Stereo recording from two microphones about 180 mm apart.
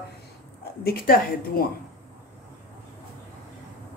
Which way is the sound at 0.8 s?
55° left (ahead or behind).